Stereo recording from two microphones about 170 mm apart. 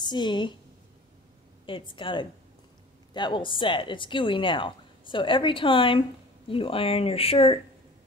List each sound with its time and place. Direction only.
0.0 s speech: 25° left (ahead or behind)
1.7 s speech: 30° left (ahead or behind)